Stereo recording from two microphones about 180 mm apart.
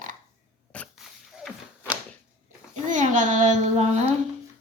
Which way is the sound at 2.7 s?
45° right (ahead or behind).